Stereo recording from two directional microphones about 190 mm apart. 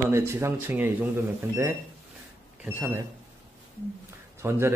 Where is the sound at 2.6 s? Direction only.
10° right (ahead or behind).